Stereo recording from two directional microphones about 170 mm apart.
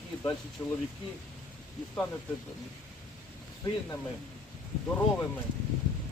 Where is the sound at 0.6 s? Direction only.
20° left (ahead or behind).